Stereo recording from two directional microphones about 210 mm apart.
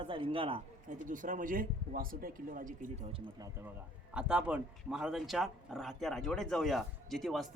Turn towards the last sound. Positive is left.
turn(degrees=0)  # may be behind; listen again after turning